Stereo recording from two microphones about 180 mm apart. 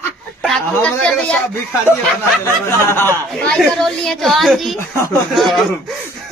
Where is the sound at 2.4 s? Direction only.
15° left (ahead or behind).